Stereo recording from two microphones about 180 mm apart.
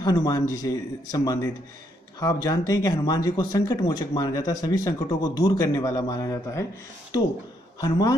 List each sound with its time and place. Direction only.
0.0 s speech: 20° left (ahead or behind)